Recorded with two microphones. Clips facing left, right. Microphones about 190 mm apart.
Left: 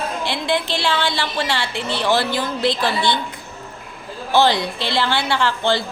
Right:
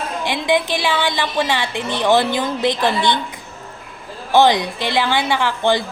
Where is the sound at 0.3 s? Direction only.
15° right (ahead or behind).